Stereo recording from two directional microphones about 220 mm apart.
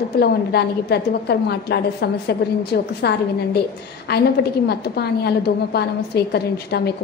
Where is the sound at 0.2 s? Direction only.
45° left (ahead or behind).